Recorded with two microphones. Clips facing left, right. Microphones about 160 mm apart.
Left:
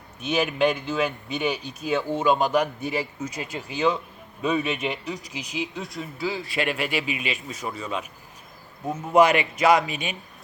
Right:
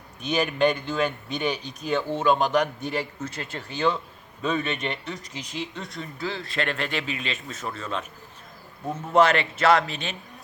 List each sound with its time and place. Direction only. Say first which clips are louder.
0.2 s speech: even; 5° left (ahead or behind)